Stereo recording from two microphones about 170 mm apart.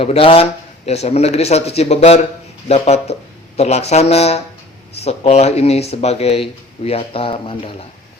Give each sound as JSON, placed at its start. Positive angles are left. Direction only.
{"t": 0.0, "sound": "speech", "side_deg": 35}